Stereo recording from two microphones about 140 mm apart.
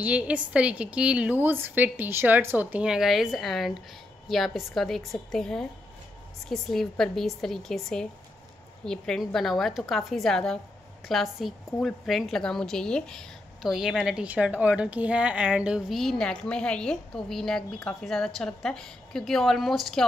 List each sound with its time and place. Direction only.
0.0 s a woman's voice: 10° right (ahead or behind)